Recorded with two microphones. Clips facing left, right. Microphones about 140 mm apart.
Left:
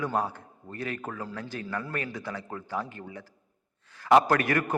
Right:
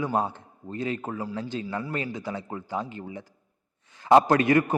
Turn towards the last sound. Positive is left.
turn(degrees=-20)  # may be behind; listen again after turning